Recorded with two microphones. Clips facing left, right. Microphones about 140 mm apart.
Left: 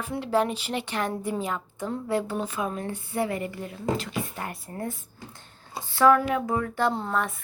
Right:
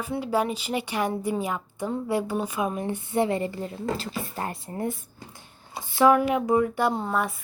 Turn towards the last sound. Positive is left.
turn(degrees=-10)  # may be behind; listen again after turning